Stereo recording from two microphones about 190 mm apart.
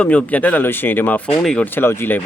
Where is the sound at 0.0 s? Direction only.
5° left (ahead or behind).